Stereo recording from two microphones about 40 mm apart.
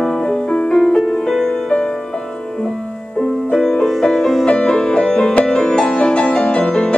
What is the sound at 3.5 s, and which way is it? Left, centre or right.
Music, centre.